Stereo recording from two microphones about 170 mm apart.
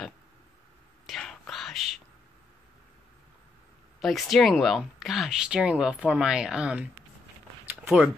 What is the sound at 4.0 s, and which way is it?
Speech, centre (ahead or behind).